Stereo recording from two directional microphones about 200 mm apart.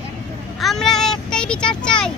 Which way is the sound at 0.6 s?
Centre (ahead or behind).